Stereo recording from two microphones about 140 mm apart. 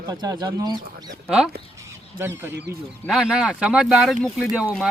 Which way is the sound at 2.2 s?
15° right (ahead or behind).